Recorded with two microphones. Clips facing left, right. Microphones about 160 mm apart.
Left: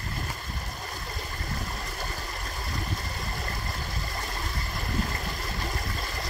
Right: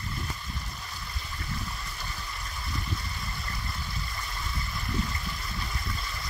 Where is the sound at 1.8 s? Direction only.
45° left (ahead or behind).